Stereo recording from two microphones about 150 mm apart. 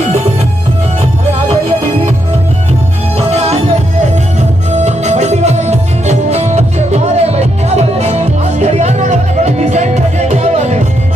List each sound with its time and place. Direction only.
3.3 s music: 45° right (ahead or behind)